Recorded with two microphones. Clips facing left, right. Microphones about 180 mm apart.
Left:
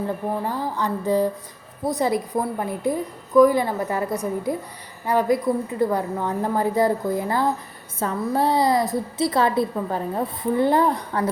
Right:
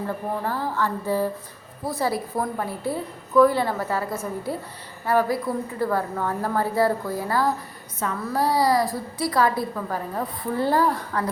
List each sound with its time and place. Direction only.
0.4 s a woman's voice: 15° left (ahead or behind)